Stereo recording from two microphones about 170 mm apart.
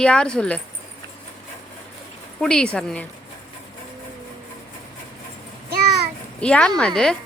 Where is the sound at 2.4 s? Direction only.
5° left (ahead or behind).